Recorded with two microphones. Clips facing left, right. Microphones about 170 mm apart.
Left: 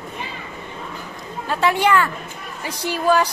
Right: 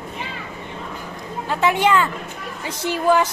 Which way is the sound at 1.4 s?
20° right (ahead or behind).